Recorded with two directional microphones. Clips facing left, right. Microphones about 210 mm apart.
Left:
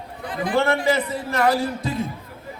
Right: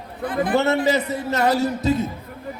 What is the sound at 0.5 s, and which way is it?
A man's voice, 25° right (ahead or behind).